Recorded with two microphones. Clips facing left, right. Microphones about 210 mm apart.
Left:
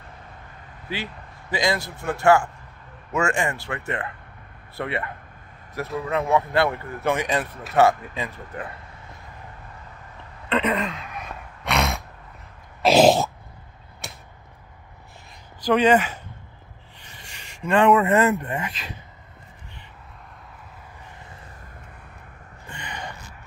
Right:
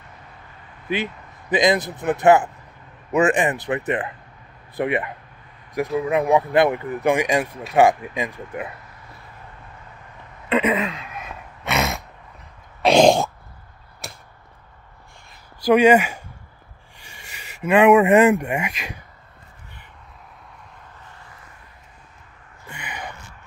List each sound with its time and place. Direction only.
0.8 s a man's voice: 20° right (ahead or behind)
10.5 s a sound: 5° right (ahead or behind)
12.8 s throat clearing: 5° left (ahead or behind)
14.0 s arrow: centre (ahead or behind)
15.6 s speech: 10° right (ahead or behind)
22.7 s gasp: 10° right (ahead or behind)